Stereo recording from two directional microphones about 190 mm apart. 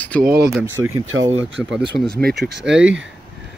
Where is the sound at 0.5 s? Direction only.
15° right (ahead or behind).